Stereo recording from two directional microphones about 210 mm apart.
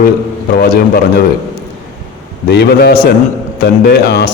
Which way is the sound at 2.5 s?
50° left (ahead or behind).